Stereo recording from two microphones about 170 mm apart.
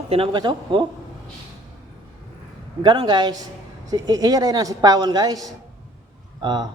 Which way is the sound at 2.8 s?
25° right (ahead or behind).